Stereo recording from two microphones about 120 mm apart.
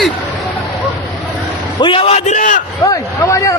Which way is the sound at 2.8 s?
25° left (ahead or behind).